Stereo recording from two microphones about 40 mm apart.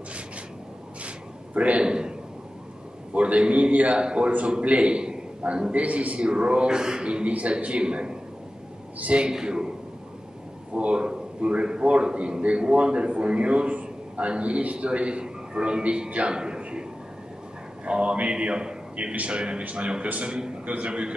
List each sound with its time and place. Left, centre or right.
1.0 s a sound: right
1.9 s a man's voice: right
3.2 s a man's voice: right
9.3 s a man's voice: centre
10.7 s a man's voice: right
17.8 s a man's voice: right
20.2 s a man's voice: right
20.6 s a man's voice: right